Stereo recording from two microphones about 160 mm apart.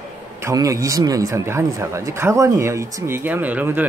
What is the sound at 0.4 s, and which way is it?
Speech, 20° right (ahead or behind).